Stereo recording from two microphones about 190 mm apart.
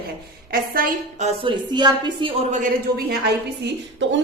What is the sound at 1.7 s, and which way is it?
Speech, 25° right (ahead or behind).